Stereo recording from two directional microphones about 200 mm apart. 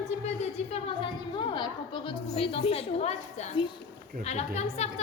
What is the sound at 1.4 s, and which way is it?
A woman's voice, 25° left (ahead or behind).